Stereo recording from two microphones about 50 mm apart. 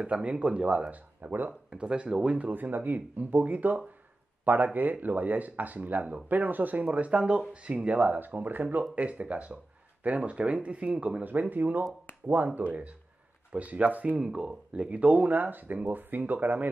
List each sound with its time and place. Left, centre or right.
0.0 s speech: right
8.9 s speech: right